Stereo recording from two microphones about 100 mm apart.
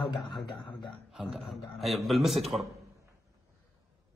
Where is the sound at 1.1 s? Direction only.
Centre (ahead or behind).